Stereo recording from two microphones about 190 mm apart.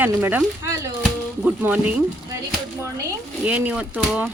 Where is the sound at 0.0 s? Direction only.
10° right (ahead or behind).